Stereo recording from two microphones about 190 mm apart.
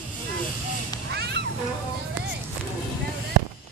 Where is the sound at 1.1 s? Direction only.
65° right (ahead or behind).